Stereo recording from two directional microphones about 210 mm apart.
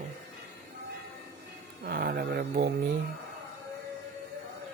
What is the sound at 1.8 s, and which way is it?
Speech, 45° right (ahead or behind).